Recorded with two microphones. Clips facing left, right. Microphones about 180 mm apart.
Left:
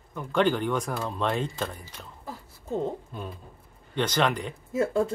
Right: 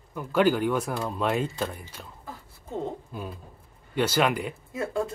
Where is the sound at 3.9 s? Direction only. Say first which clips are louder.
Right 1 dB; 10° right (ahead or behind).